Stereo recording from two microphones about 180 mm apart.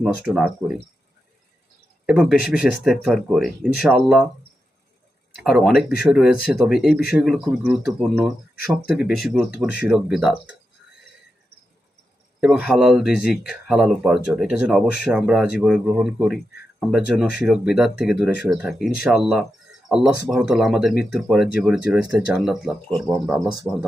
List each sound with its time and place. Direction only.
0.0 s speech: 5° right (ahead or behind)
2.0 s speech: 5° right (ahead or behind)
5.4 s speech: centre (ahead or behind)
12.4 s speech: centre (ahead or behind)